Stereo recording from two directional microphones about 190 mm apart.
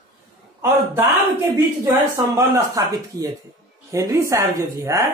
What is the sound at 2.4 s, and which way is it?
Speech, 20° right (ahead or behind).